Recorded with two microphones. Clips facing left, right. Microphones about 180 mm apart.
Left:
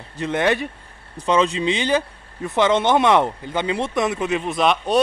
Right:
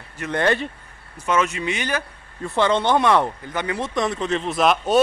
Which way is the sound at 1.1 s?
30° left (ahead or behind).